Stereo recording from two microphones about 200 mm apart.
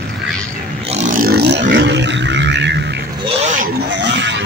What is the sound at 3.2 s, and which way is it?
Roaring cats, 35° right (ahead or behind).